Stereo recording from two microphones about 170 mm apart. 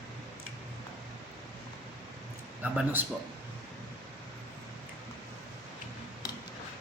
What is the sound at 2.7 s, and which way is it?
Speech, 10° right (ahead or behind).